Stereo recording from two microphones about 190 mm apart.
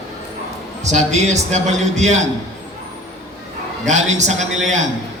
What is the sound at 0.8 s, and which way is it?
A man's voice, 40° right (ahead or behind).